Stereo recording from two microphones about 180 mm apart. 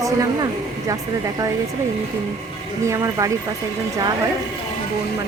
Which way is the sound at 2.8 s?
15° right (ahead or behind).